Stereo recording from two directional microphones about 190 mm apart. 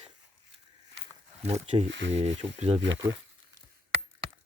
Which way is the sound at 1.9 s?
75° right (ahead or behind).